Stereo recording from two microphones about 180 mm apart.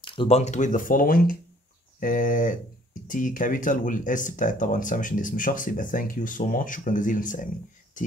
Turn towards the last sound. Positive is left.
turn(degrees=45)  # may be behind; listen again after turning